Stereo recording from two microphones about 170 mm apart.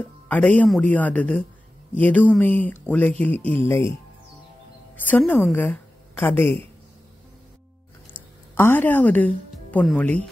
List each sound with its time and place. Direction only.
0.0 s speech: 10° left (ahead or behind)
5.1 s a woman's voice: 10° left (ahead or behind)
8.5 s speech: 10° left (ahead or behind)